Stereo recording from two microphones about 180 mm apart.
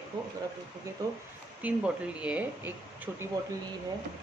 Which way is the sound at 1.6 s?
5° right (ahead or behind).